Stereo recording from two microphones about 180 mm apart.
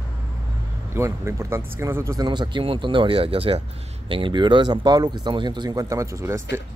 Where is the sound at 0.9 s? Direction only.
15° right (ahead or behind).